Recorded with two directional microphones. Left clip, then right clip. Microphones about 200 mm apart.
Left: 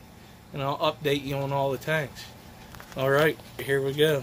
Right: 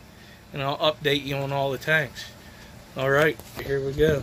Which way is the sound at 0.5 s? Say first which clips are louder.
Right 3 dB; centre (ahead or behind).